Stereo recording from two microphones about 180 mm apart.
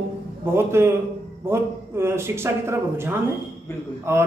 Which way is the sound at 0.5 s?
15° right (ahead or behind).